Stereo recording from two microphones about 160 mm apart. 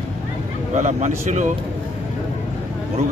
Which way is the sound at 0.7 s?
50° right (ahead or behind).